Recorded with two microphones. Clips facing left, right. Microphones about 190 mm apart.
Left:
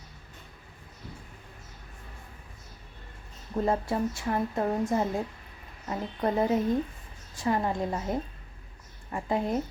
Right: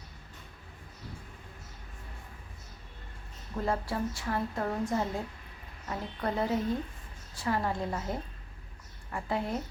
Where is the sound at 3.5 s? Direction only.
20° left (ahead or behind).